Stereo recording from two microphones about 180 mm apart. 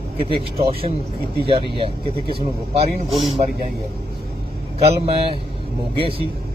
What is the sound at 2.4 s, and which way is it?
Speech, 35° right (ahead or behind).